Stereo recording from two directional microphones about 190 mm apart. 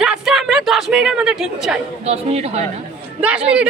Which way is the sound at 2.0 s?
35° right (ahead or behind).